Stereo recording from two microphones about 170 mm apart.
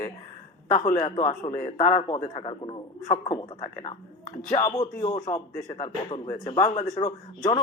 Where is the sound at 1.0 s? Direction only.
25° left (ahead or behind); by 2.4 s 40° left (ahead or behind).